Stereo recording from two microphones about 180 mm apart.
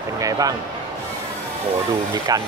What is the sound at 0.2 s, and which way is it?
Speech, 20° right (ahead or behind).